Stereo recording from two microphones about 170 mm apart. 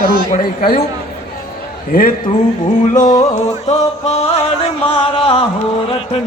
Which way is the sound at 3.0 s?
20° left (ahead or behind).